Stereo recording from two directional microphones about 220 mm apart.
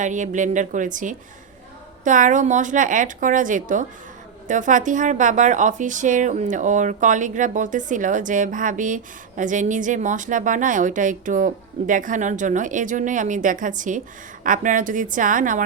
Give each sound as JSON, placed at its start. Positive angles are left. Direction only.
{"t": 0.0, "sound": "speech", "side_deg": -35}